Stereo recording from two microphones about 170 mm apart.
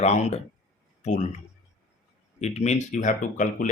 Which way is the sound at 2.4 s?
40° left (ahead or behind).